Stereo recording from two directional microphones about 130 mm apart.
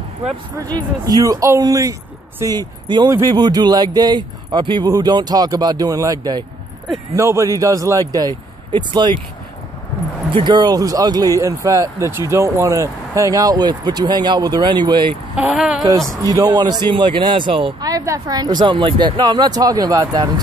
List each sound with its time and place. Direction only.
0.6 s a man's voice: 30° right (ahead or behind)
7.2 s speech: 25° right (ahead or behind)
10.3 s speech: 35° right (ahead or behind)
15.3 s speech: 5° right (ahead or behind)
16.1 s a man's voice: 25° right (ahead or behind); by 17.7 s 45° right (ahead or behind)
17.7 s a man's voice: 30° right (ahead or behind)